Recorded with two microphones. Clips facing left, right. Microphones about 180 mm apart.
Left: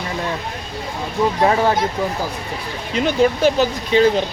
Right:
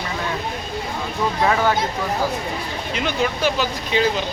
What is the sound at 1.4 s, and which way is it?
Speech, 30° left (ahead or behind).